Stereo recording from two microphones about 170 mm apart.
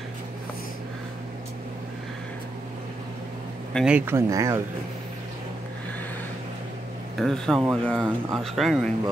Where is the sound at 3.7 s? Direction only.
5° right (ahead or behind).